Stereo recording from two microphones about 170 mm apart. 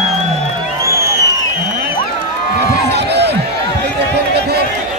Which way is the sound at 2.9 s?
75° right (ahead or behind).